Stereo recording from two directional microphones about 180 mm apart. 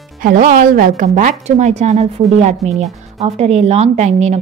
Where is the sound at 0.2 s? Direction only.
45° right (ahead or behind).